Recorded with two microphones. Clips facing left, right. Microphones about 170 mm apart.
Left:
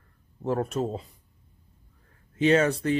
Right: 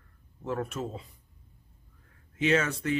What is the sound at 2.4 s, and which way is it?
Speech, 35° left (ahead or behind).